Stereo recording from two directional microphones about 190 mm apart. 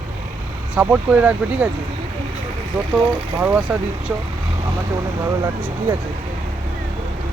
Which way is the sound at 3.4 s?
10° right (ahead or behind).